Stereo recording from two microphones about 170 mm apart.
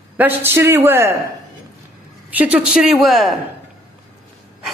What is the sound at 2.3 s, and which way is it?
A woman's voice, 10° right (ahead or behind).